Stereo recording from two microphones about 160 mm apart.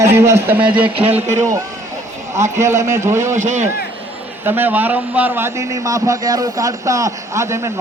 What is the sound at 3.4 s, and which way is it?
Speech, 50° right (ahead or behind).